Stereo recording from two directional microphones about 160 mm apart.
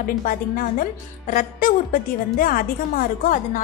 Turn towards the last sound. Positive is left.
turn(degrees=55)  # may be behind; listen again after turning